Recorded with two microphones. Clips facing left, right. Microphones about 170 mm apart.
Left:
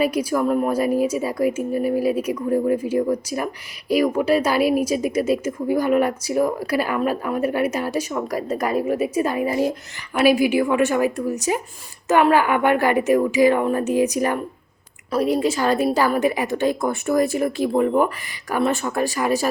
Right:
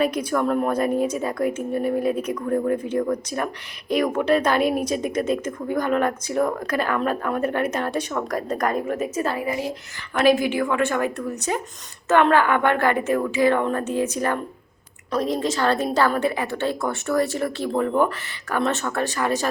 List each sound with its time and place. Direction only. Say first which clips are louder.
0.0 s speech: left 2 dB; 5° left (ahead or behind)
9.5 s speech: left 5 dB; 45° left (ahead or behind)
10.2 s speech: left 2 dB; 10° left (ahead or behind)